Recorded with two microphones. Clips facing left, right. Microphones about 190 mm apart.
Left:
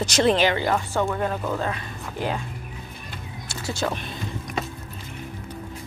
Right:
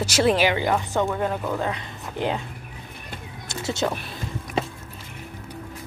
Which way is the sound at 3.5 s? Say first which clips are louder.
Right 2 dB; 20° right (ahead or behind).